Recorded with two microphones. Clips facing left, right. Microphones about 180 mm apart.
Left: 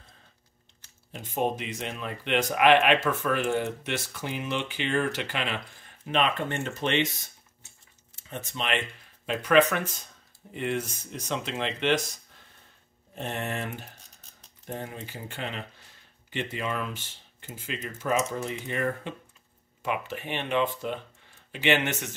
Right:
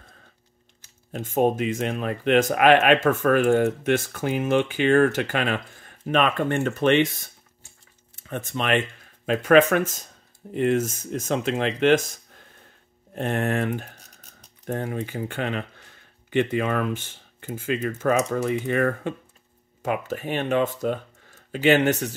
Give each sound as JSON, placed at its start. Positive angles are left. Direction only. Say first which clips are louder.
{"t": 1.1, "sound": "speech", "louder": "right 7 dB", "side_deg": -45}
{"t": 8.2, "sound": "speech", "louder": "right 6 dB", "side_deg": -55}
{"t": 19.8, "sound": "speech", "louder": "right 5 dB", "side_deg": -40}